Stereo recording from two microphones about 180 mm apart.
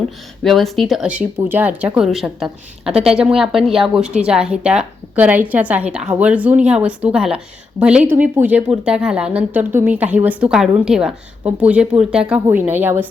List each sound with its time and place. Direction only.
0.4 s speech: centre (ahead or behind)
2.9 s speech: 35° right (ahead or behind)
3.2 s a woman's voice: centre (ahead or behind)